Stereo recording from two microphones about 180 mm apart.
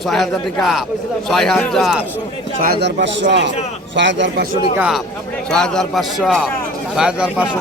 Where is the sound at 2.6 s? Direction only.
65° right (ahead or behind); by 4.4 s 85° right.